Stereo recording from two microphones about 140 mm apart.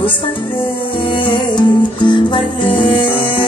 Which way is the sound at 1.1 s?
35° left (ahead or behind).